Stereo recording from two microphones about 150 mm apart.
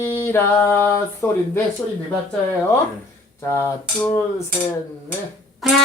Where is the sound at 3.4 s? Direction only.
15° left (ahead or behind).